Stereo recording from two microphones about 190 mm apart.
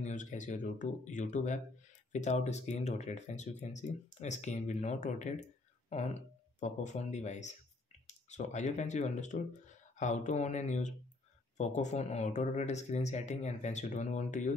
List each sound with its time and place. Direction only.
0.0 s speech: 40° left (ahead or behind)
6.6 s speech: 40° left (ahead or behind)